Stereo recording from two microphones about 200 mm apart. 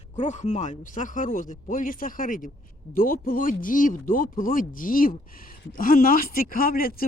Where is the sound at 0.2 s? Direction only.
35° left (ahead or behind).